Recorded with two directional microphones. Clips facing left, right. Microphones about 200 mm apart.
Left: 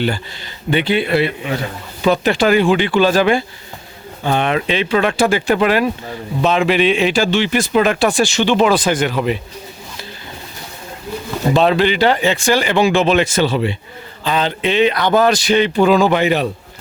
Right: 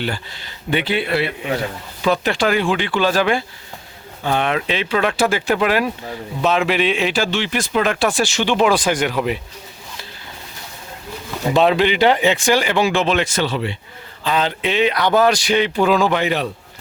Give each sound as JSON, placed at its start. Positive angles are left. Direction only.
{"t": 0.0, "sound": "speech", "side_deg": 0}
{"t": 7.9, "sound": "speech", "side_deg": 0}
{"t": 11.5, "sound": "speech", "side_deg": -15}
{"t": 12.6, "sound": "speech", "side_deg": -5}
{"t": 14.3, "sound": "speech", "side_deg": -5}